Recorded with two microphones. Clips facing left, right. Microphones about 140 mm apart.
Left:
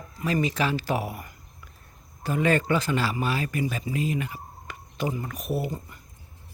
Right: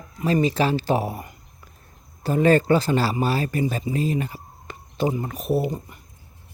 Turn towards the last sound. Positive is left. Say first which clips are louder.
# right 6 dB
turn(degrees=-20)  # may be behind; listen again after turning